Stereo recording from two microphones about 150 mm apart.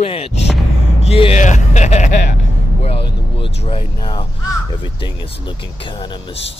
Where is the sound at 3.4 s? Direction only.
40° left (ahead or behind).